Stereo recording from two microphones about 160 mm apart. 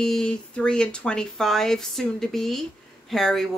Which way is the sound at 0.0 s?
5° left (ahead or behind).